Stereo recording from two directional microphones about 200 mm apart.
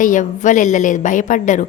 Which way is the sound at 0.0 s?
40° left (ahead or behind).